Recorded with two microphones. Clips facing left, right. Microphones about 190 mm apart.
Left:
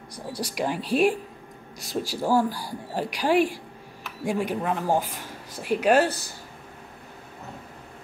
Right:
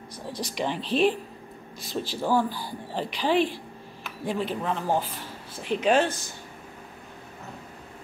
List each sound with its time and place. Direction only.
0.1 s speech: 10° left (ahead or behind)